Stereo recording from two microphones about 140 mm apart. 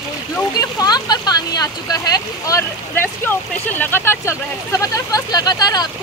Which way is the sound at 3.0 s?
15° left (ahead or behind).